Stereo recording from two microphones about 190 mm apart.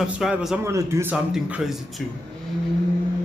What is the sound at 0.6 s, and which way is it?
A man's voice, 15° right (ahead or behind).